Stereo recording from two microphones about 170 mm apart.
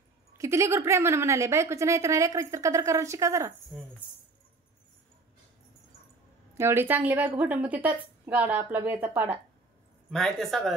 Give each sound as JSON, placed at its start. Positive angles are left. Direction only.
{"t": 0.4, "sound": "a woman's voice", "side_deg": -15}
{"t": 6.5, "sound": "a woman's voice", "side_deg": -15}
{"t": 10.1, "sound": "speech", "side_deg": 0}